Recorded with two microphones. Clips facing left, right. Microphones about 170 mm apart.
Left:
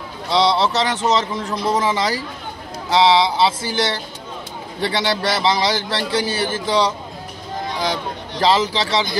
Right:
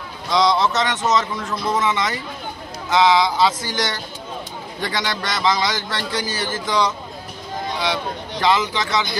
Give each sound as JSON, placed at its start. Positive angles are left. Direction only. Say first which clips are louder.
{"t": 0.3, "sound": "a man's voice", "louder": "left 1 dB", "side_deg": 30}
{"t": 8.4, "sound": "a man's voice", "louder": "left 2 dB", "side_deg": 35}